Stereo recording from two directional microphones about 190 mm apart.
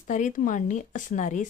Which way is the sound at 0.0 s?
45° left (ahead or behind).